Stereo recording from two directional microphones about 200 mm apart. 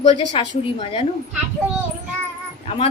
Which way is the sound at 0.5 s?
30° left (ahead or behind).